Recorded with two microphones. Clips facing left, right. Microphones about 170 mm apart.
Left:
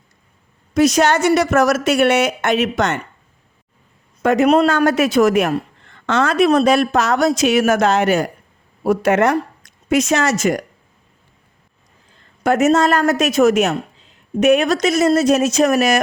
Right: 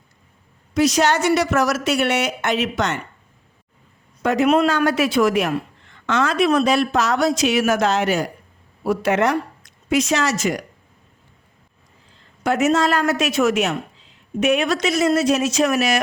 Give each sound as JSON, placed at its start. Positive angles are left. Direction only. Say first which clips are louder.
{"t": 0.7, "sound": "a man's voice", "louder": "left 3 dB", "side_deg": 50}
{"t": 4.2, "sound": "a man's voice", "louder": "left 3 dB", "side_deg": 50}
{"t": 12.4, "sound": "a man's voice", "louder": "left 4 dB", "side_deg": 45}